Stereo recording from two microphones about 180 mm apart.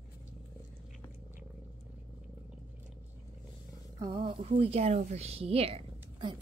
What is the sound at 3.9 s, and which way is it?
A woman's voice, 25° right (ahead or behind).